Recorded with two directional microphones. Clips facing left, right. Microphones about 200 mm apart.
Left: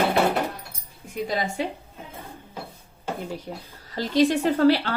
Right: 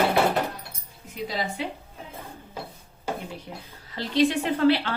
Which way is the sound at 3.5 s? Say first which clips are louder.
Left 4 dB; 40° left (ahead or behind).